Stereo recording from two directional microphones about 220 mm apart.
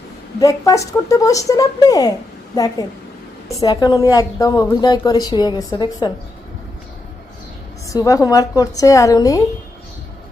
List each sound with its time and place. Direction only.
0.3 s a woman's voice: 15° left (ahead or behind)
3.6 s a woman's voice: 15° left (ahead or behind)
7.9 s a woman's voice: 15° left (ahead or behind)